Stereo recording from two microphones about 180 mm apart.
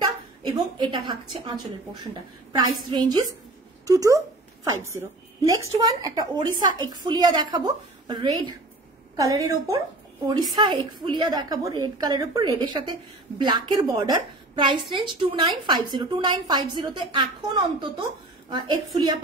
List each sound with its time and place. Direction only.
0.4 s a woman's voice: 25° right (ahead or behind)
2.5 s a woman's voice: 25° right (ahead or behind)